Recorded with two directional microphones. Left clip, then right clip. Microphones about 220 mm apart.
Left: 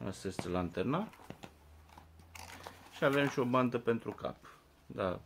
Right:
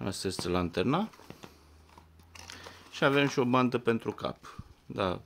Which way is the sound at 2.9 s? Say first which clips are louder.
Right 5 dB; 55° right (ahead or behind).